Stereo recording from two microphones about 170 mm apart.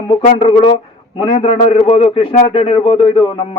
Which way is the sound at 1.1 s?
30° left (ahead or behind).